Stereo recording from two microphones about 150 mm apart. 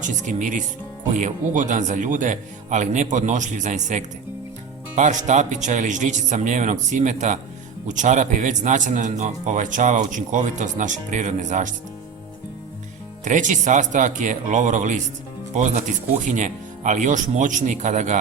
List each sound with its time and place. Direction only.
0.0 s speech: 55° right (ahead or behind)
13.2 s speech: 55° right (ahead or behind)